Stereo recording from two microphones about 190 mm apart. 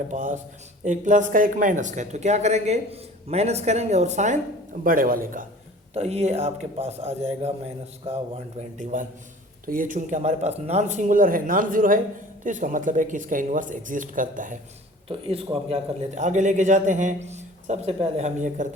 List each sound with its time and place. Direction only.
0.1 s speech: 40° right (ahead or behind)
4.8 s speech: 50° right (ahead or behind)
5.9 s speech: 35° right (ahead or behind)
8.8 s speech: 40° right (ahead or behind)
15.1 s speech: 30° right (ahead or behind)